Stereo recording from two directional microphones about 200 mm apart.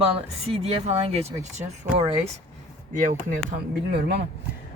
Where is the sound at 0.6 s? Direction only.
30° right (ahead or behind).